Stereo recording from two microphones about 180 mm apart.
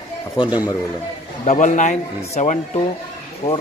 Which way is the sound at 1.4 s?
45° left (ahead or behind).